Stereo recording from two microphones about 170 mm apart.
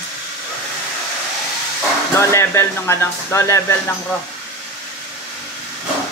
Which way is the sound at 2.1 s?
15° left (ahead or behind).